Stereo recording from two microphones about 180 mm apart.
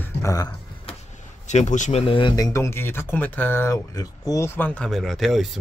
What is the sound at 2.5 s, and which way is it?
Speech, 15° left (ahead or behind).